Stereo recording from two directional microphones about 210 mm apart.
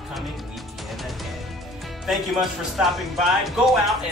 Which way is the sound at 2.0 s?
Centre (ahead or behind).